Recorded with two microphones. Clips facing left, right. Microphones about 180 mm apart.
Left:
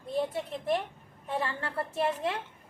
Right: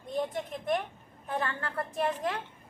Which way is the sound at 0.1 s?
30° left (ahead or behind).